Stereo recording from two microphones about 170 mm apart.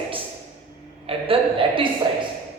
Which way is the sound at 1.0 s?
30° right (ahead or behind).